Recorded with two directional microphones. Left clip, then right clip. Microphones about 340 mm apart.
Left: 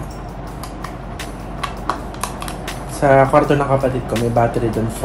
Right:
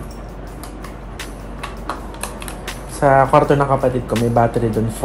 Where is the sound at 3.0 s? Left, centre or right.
Centre.